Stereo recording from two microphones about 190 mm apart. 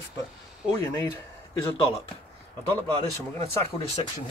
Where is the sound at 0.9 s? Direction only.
15° left (ahead or behind).